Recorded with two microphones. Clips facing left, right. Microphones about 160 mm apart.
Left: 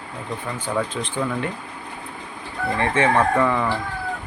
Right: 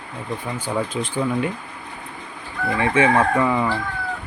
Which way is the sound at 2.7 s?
10° right (ahead or behind).